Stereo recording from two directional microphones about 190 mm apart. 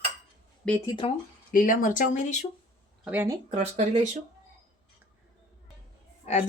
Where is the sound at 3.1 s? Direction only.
10° right (ahead or behind).